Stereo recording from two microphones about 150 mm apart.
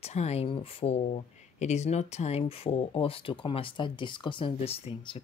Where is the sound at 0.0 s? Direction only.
45° left (ahead or behind).